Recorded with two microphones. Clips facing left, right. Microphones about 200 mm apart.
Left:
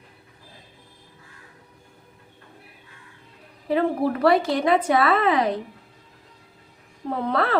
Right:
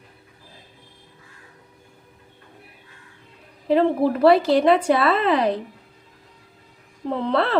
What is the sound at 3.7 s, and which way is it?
A woman's voice, 25° right (ahead or behind).